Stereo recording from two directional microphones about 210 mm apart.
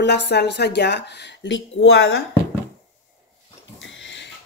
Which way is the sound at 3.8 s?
60° left (ahead or behind).